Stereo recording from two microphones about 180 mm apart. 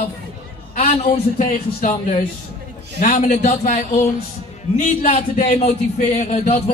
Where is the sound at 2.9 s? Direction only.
45° left (ahead or behind).